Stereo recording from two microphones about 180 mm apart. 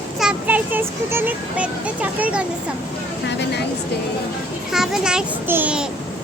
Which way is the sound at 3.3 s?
75° left (ahead or behind).